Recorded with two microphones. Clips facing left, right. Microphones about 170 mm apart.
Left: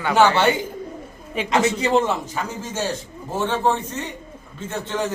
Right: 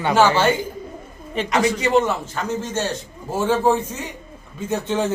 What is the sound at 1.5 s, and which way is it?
Speech, 25° left (ahead or behind).